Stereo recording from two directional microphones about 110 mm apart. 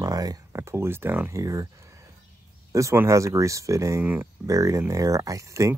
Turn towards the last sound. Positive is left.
turn(degrees=-30)  # may be behind; listen again after turning